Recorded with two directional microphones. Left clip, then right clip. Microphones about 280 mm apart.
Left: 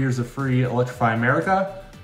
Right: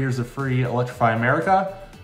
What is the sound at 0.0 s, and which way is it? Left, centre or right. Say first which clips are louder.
Speech: left 1 dB; centre.